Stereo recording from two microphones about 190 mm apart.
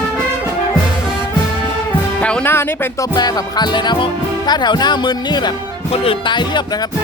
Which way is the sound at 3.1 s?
20° left (ahead or behind).